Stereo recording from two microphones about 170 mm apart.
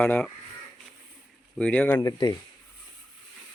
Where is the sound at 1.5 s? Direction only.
5° left (ahead or behind).